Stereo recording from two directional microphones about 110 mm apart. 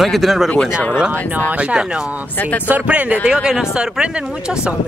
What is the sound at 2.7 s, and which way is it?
Speech, 10° right (ahead or behind).